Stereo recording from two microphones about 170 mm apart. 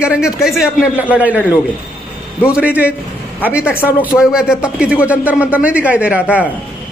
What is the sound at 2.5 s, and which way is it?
Speech, 10° right (ahead or behind).